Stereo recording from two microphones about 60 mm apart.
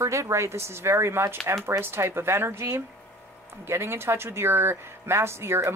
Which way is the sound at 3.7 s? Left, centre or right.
Right.